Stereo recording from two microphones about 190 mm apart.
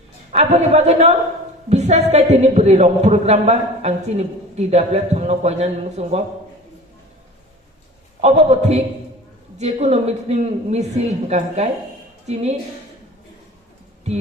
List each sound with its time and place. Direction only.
0.3 s a man's voice: 35° right (ahead or behind)
8.2 s a man's voice: 35° right (ahead or behind)